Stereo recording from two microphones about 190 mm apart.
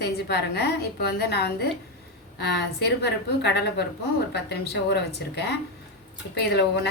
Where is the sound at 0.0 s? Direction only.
60° left (ahead or behind).